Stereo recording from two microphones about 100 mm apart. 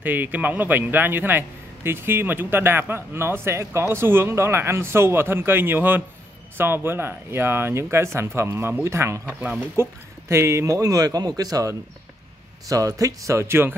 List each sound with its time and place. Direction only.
0.0 s a man's voice: 20° right (ahead or behind)